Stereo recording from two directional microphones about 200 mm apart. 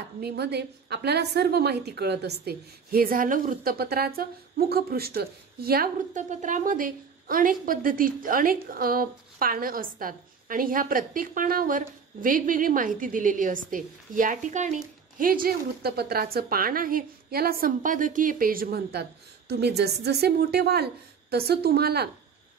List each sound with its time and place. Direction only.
0.2 s a woman's voice: 55° right (ahead or behind)